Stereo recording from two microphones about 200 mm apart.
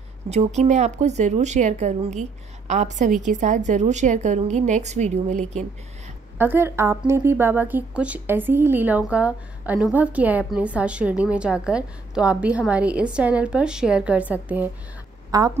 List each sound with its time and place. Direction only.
0.3 s a woman's voice: 35° right (ahead or behind)
6.3 s speech: 10° right (ahead or behind)
15.3 s a woman's voice: 20° right (ahead or behind)